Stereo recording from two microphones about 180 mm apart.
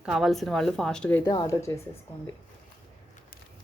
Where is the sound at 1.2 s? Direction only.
20° left (ahead or behind).